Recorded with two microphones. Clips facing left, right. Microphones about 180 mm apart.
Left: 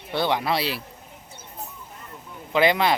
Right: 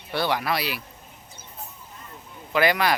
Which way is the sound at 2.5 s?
25° left (ahead or behind).